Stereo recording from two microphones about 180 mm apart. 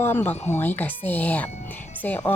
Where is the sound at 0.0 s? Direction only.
10° left (ahead or behind).